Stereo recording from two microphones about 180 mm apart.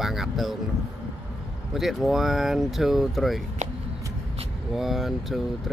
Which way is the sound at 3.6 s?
40° right (ahead or behind).